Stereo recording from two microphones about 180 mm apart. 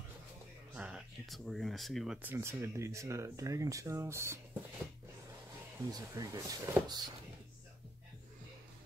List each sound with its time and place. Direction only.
0.7 s speech: 5° right (ahead or behind)
2.2 s speech: 15° right (ahead or behind)
5.9 s speech: 20° right (ahead or behind)